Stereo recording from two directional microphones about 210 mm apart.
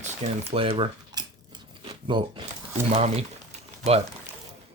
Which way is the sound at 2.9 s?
30° right (ahead or behind).